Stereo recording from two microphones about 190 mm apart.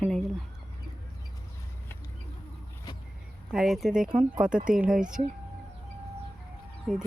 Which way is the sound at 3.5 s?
Centre (ahead or behind).